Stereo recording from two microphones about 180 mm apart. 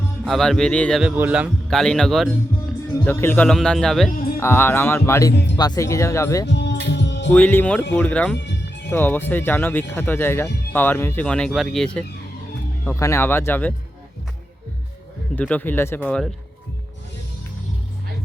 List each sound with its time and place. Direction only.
0.3 s speech: centre (ahead or behind)
1.1 s speech: 10° right (ahead or behind)
3.0 s speech: 10° left (ahead or behind)
4.4 s speech: 15° left (ahead or behind)
6.5 s music: 75° left (ahead or behind)
7.3 s speech: 10° left (ahead or behind)
8.4 s music: 70° left (ahead or behind)
8.9 s speech: 10° left (ahead or behind)
12.8 s speech: 15° left (ahead or behind)
15.4 s speech: 10° left (ahead or behind)